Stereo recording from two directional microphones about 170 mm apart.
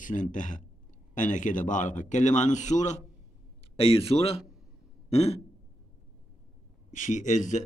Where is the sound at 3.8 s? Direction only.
30° left (ahead or behind).